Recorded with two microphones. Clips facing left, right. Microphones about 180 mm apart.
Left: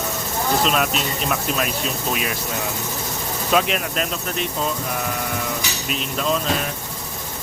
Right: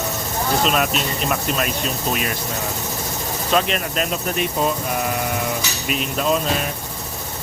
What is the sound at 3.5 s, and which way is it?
Speech, 5° left (ahead or behind).